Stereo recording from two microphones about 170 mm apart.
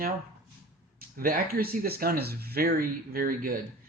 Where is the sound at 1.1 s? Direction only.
60° right (ahead or behind).